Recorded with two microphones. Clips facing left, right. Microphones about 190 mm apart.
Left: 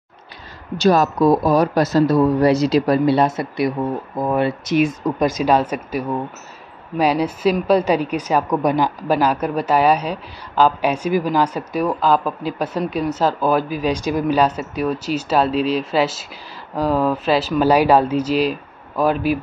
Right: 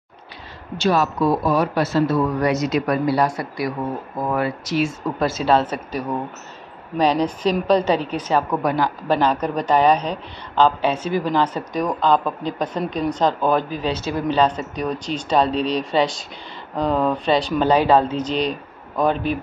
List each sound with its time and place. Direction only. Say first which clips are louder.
0.7 s speech: left 4 dB; 40° left (ahead or behind); by 19.3 s 5° left (ahead or behind)